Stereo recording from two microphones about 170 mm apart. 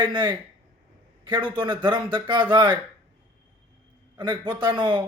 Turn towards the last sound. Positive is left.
turn(degrees=-30)  # may be behind; listen again after turning